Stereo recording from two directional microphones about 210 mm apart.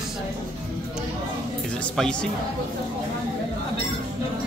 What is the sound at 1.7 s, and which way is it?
Speech, 5° left (ahead or behind).